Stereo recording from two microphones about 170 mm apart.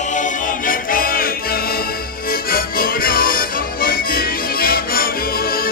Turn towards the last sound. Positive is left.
turn(degrees=60)  # may be behind; listen again after turning